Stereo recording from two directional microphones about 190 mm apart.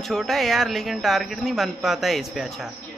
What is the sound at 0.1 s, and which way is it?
A man's voice, centre (ahead or behind).